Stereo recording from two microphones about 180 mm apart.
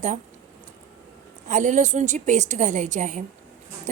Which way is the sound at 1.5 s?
45° right (ahead or behind).